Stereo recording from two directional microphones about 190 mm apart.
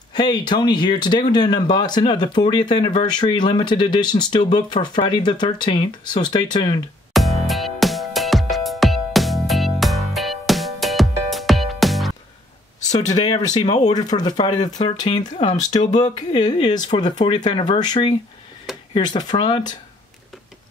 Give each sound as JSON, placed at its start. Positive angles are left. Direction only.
{"t": 0.1, "sound": "speech", "side_deg": 25}
{"t": 7.2, "sound": "music", "side_deg": 0}
{"t": 13.0, "sound": "speech", "side_deg": 35}
{"t": 13.8, "sound": "speech", "side_deg": 20}
{"t": 17.4, "sound": "speech", "side_deg": 35}